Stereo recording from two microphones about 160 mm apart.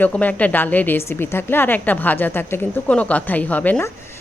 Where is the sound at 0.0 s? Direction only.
10° left (ahead or behind).